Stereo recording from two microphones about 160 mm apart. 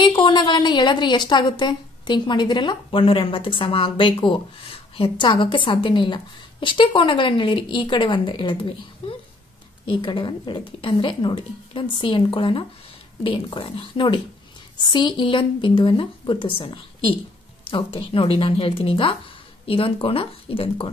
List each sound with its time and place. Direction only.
0.0 s a woman's voice: 30° left (ahead or behind)